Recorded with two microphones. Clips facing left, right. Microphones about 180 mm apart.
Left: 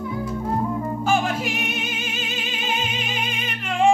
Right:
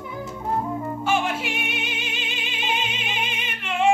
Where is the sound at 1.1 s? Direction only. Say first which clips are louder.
Left 2 dB; 40° left (ahead or behind).